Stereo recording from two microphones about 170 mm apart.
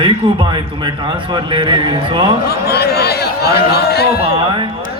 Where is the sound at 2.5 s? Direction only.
70° left (ahead or behind).